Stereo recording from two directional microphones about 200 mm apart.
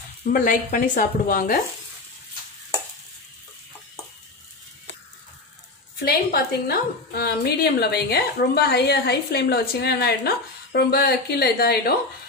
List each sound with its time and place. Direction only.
0.3 s a woman's voice: 45° left (ahead or behind)
6.0 s a woman's voice: 50° left (ahead or behind)